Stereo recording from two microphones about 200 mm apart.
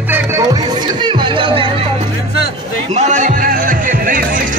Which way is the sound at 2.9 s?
35° right (ahead or behind).